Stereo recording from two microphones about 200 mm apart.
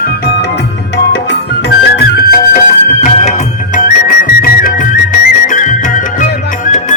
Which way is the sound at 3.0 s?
35° left (ahead or behind).